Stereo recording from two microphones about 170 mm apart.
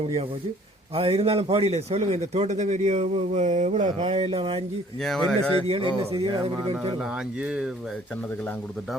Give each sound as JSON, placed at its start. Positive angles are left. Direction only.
{"t": 0.9, "sound": "a man's voice", "side_deg": -35}
{"t": 5.0, "sound": "speech", "side_deg": 0}
{"t": 5.6, "sound": "a man's voice", "side_deg": -35}
{"t": 7.0, "sound": "speech", "side_deg": -5}